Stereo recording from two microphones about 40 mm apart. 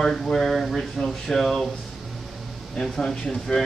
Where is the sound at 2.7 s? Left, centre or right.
Centre.